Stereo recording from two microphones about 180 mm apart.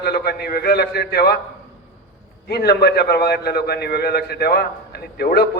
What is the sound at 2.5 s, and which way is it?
A man's voice, 60° left (ahead or behind).